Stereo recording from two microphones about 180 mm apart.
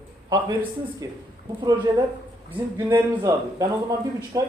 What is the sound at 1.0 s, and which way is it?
Speech, 20° right (ahead or behind).